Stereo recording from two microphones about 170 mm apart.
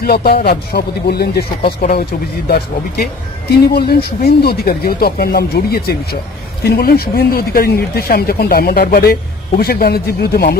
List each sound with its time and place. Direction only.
0.0 s speech: 65° left (ahead or behind)